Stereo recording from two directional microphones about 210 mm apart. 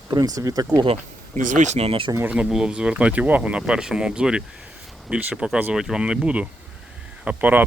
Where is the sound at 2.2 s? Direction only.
5° right (ahead or behind).